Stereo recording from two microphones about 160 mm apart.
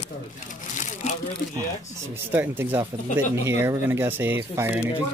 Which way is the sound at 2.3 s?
15° right (ahead or behind).